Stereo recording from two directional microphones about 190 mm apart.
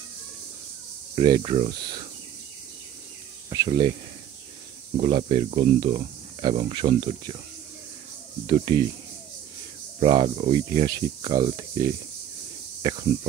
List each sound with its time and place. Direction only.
1.1 s speech: 25° right (ahead or behind)
3.4 s speech: 20° right (ahead or behind)
4.9 s speech: 30° right (ahead or behind)
8.5 s speech: 25° right (ahead or behind)
9.9 s speech: 30° right (ahead or behind)